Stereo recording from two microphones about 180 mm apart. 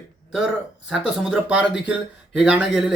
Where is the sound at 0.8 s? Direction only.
5° right (ahead or behind).